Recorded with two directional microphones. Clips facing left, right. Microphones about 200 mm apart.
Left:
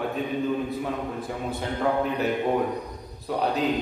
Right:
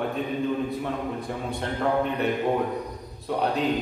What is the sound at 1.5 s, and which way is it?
Speech, centre (ahead or behind).